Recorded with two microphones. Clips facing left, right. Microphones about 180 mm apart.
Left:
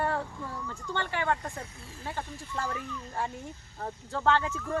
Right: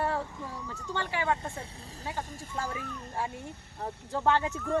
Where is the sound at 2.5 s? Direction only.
10° right (ahead or behind).